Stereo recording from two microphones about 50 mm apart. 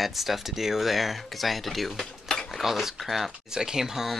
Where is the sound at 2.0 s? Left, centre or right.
Centre.